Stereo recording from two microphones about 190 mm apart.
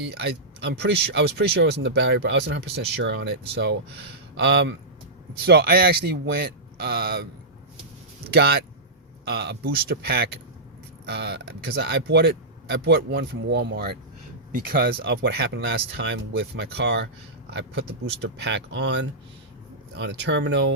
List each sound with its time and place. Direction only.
0.2 s speech: 60° right (ahead or behind)
5.5 s speech: 55° right (ahead or behind)
8.3 s speech: 55° right (ahead or behind)